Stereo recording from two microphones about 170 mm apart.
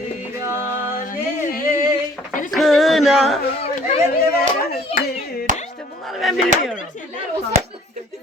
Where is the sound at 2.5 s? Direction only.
Centre (ahead or behind).